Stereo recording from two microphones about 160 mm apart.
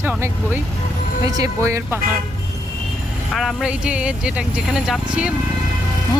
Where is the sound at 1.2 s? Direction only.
20° right (ahead or behind).